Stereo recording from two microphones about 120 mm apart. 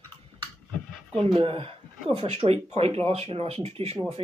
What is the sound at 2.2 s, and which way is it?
Speech, 60° right (ahead or behind).